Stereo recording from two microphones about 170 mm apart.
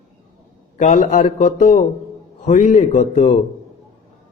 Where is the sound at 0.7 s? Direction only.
45° left (ahead or behind).